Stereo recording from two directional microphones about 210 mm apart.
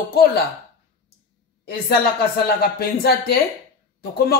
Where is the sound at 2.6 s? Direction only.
50° left (ahead or behind).